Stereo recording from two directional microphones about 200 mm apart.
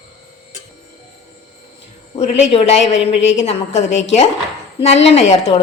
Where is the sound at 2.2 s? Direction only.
35° left (ahead or behind).